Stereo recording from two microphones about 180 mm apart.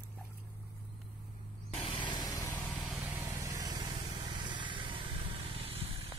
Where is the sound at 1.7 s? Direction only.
30° left (ahead or behind).